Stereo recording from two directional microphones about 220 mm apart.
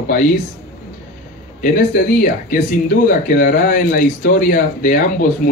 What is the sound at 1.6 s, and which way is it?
Speech, 40° left (ahead or behind).